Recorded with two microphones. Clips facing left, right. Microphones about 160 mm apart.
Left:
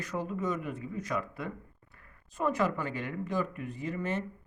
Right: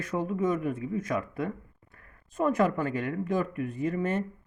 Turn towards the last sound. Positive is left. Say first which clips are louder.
# right 5 dB
turn(degrees=-50)  # may be behind; listen again after turning